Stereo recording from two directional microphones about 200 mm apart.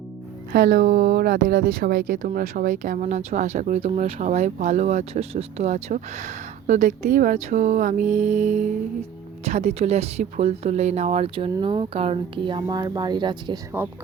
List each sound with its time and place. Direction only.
0.5 s speech: 50° right (ahead or behind); by 13.6 s 20° right (ahead or behind)